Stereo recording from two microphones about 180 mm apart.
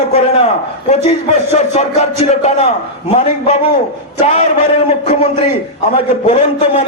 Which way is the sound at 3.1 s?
35° left (ahead or behind).